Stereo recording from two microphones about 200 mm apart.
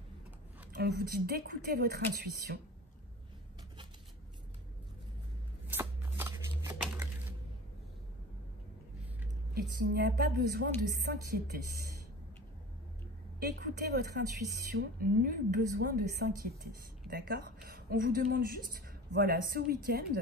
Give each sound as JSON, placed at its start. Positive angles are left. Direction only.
{"t": 0.7, "sound": "a woman's voice", "side_deg": -50}
{"t": 5.7, "sound": "shuffling cards", "side_deg": -10}
{"t": 9.5, "sound": "a woman's voice", "side_deg": -50}
{"t": 13.4, "sound": "a woman's voice", "side_deg": -55}